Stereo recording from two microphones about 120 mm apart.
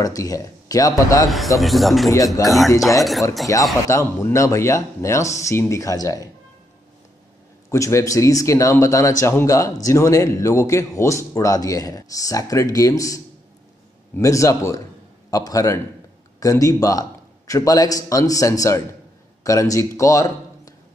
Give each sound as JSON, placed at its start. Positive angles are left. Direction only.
{"t": 0.0, "sound": "speech", "side_deg": 30}
{"t": 1.6, "sound": "speech", "side_deg": 0}
{"t": 2.4, "sound": "speech", "side_deg": 30}
{"t": 3.0, "sound": "speech", "side_deg": 0}
{"t": 3.5, "sound": "speech", "side_deg": 25}
{"t": 7.7, "sound": "a man's voice", "side_deg": 25}